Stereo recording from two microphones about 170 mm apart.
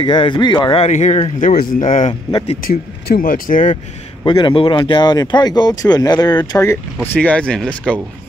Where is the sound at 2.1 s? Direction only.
30° left (ahead or behind).